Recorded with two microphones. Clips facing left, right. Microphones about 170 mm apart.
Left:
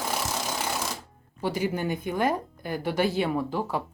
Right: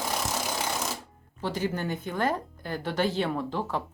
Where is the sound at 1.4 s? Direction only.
10° left (ahead or behind).